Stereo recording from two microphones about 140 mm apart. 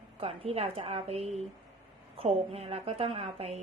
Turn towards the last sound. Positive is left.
turn(degrees=-45)  # may be behind; listen again after turning